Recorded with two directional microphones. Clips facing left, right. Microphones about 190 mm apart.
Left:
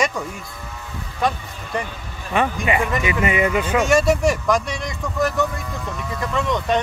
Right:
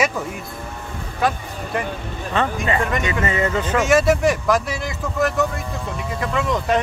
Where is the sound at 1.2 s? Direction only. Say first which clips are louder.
Right 1 dB; centre (ahead or behind).